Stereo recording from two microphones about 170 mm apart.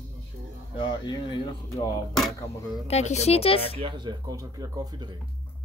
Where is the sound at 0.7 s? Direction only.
25° left (ahead or behind).